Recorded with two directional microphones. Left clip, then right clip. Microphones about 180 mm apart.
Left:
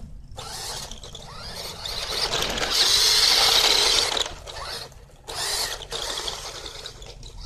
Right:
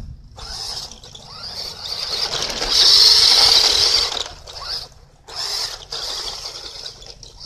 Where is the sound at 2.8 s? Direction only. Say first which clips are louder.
Right 8 dB; 20° right (ahead or behind).